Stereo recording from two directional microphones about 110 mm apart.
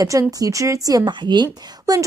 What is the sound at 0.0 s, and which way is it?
A woman's voice, 30° right (ahead or behind).